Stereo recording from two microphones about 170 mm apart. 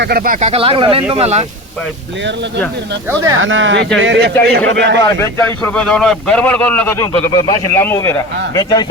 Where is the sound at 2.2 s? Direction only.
90° right.